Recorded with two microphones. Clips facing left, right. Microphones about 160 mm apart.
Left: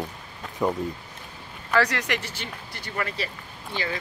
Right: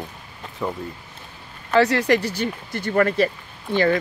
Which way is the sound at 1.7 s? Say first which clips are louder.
Right 7 dB; 30° right (ahead or behind).